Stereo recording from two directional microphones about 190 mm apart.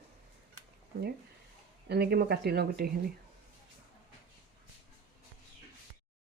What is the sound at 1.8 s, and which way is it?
Speech, 60° right (ahead or behind).